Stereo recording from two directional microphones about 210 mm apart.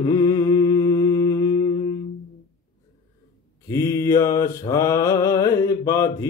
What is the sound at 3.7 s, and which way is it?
Mantra, 15° left (ahead or behind).